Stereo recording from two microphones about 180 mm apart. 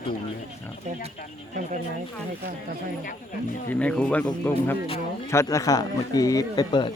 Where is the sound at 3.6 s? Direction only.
5° left (ahead or behind).